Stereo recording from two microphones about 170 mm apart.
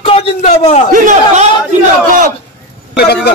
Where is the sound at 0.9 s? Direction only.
45° right (ahead or behind).